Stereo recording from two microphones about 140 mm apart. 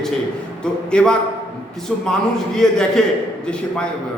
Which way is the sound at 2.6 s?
5° left (ahead or behind).